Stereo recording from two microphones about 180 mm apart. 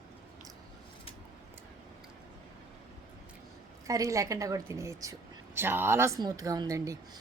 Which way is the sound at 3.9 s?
15° right (ahead or behind).